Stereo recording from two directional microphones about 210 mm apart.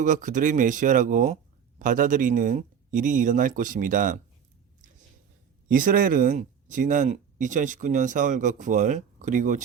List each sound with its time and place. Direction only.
0.0 s speech: 40° right (ahead or behind)
5.6 s speech: 40° right (ahead or behind)